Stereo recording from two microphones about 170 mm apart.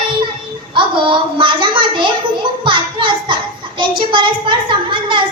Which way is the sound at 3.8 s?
30° right (ahead or behind).